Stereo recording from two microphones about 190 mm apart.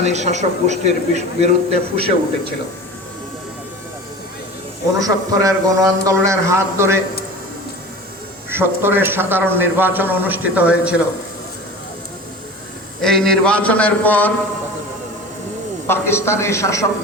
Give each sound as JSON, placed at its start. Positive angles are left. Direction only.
{"t": 0.0, "sound": "a man's voice", "side_deg": -35}
{"t": 4.9, "sound": "a man's voice", "side_deg": -20}
{"t": 8.4, "sound": "a man's voice", "side_deg": -10}
{"t": 13.0, "sound": "a man's voice", "side_deg": 5}
{"t": 15.9, "sound": "a man's voice", "side_deg": 15}